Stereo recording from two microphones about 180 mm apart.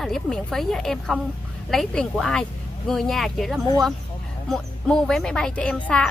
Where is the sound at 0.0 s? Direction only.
Centre (ahead or behind).